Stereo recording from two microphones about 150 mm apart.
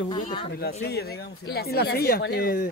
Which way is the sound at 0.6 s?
90° left.